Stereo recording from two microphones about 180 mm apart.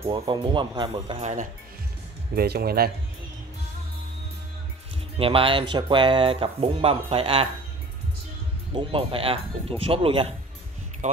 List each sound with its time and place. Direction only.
0.0 s speech: 25° right (ahead or behind); by 1.5 s 40° right (ahead or behind)
2.3 s speech: 60° right (ahead or behind)
5.1 s speech: 30° right (ahead or behind)
8.7 s speech: 30° right (ahead or behind)